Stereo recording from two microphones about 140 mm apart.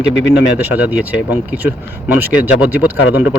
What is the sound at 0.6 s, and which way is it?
Speech, 10° right (ahead or behind).